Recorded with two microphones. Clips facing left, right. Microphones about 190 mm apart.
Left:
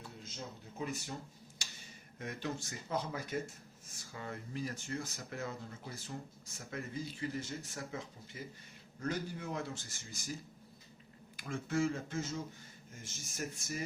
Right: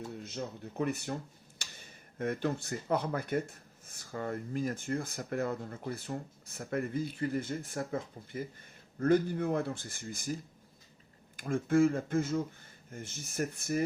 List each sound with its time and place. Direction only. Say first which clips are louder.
0.2 s speech: right 8 dB; 60° right (ahead or behind)
11.3 s speech: right 8 dB; 50° right (ahead or behind)